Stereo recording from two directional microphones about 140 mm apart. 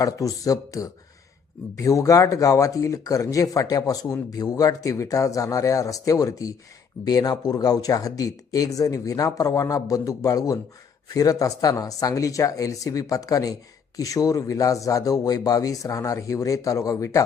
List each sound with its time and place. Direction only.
0.0 s speech: 25° left (ahead or behind)